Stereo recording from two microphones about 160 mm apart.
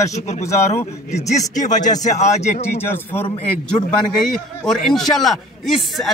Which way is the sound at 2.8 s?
15° left (ahead or behind).